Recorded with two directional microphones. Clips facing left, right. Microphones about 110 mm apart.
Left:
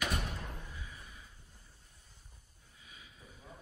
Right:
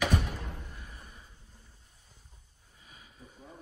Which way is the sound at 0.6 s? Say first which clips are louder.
Right 1 dB; 50° right (ahead or behind).